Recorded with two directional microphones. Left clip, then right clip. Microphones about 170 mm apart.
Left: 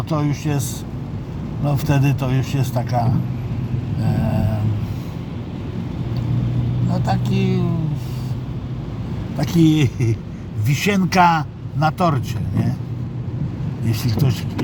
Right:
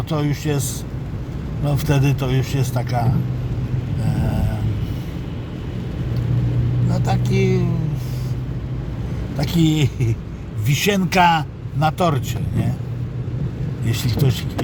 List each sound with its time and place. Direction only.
0.1 s speech: 5° left (ahead or behind)
1.6 s a man's voice: 10° left (ahead or behind)
6.9 s a man's voice: 10° left (ahead or behind)
9.4 s speech: 5° left (ahead or behind)
13.8 s speech: 5° left (ahead or behind)